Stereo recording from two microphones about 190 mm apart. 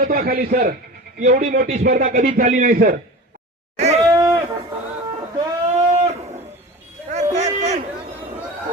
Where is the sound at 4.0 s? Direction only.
15° right (ahead or behind).